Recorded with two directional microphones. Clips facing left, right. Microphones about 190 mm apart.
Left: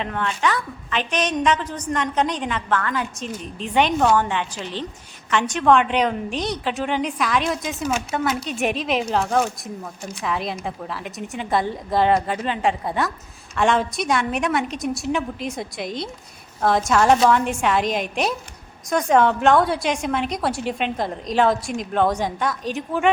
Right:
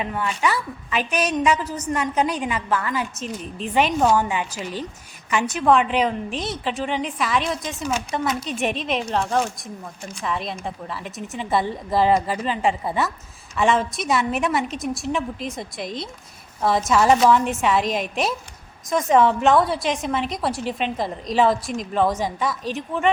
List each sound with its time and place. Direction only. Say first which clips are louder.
0.0 s a woman's voice: even; 5° right (ahead or behind)